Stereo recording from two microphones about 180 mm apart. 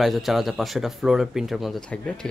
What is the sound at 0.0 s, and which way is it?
Speech, centre (ahead or behind).